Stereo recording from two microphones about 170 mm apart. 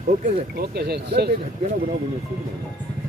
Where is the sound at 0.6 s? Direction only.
70° right (ahead or behind).